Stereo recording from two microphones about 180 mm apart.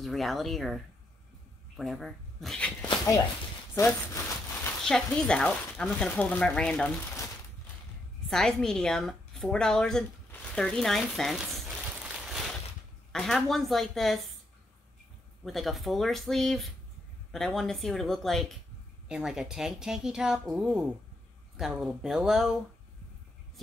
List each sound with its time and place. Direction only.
0.0 s speech: centre (ahead or behind)
3.7 s a sound: 15° left (ahead or behind)
4.8 s speech: 5° left (ahead or behind)
8.3 s a woman's voice: 5° left (ahead or behind)
15.4 s speech: centre (ahead or behind)